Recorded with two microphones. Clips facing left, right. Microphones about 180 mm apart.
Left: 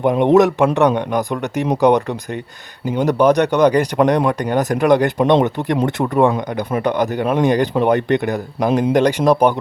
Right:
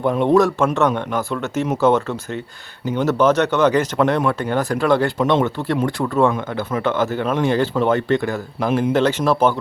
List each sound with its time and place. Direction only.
0.0 s speech: 15° left (ahead or behind)